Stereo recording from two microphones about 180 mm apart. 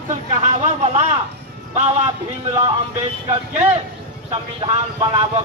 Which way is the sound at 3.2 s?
35° right (ahead or behind).